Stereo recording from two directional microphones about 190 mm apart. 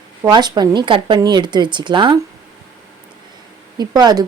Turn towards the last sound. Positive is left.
turn(degrees=-20)  # may be behind; listen again after turning